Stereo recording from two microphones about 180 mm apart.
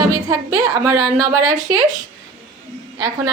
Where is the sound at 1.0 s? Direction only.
20° right (ahead or behind).